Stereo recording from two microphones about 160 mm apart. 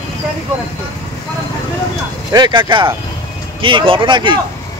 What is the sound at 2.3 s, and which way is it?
Speech, 25° right (ahead or behind).